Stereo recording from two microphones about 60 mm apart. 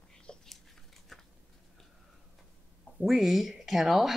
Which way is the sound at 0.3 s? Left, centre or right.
Centre.